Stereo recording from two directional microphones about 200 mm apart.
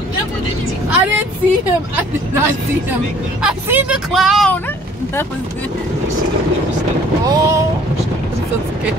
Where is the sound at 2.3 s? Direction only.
10° right (ahead or behind).